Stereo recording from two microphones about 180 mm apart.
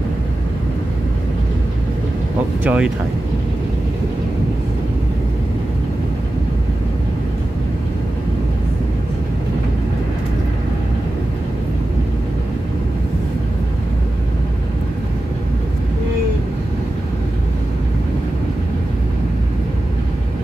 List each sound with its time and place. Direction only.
2.6 s speech: 10° right (ahead or behind)